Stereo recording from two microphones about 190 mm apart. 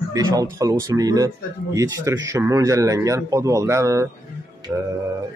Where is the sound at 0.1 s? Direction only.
20° right (ahead or behind).